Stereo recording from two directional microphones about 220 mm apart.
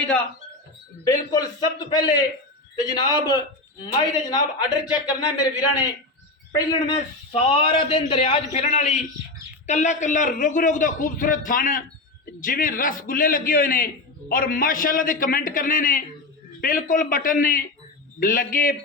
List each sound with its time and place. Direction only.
1.0 s a man's voice: 15° left (ahead or behind)
6.5 s a man's voice: 20° left (ahead or behind); by 18.8 s 40° left (ahead or behind)